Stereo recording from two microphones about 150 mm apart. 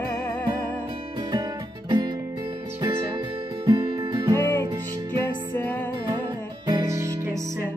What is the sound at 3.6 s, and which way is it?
Music, 25° right (ahead or behind).